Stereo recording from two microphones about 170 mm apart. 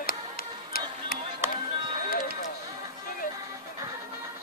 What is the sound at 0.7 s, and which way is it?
Music, 60° left (ahead or behind).